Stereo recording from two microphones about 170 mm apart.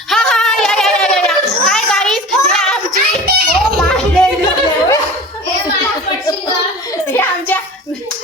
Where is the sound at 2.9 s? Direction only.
70° right (ahead or behind).